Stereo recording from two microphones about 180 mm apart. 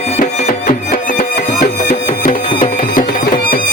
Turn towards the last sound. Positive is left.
turn(degrees=50)  # may be behind; listen again after turning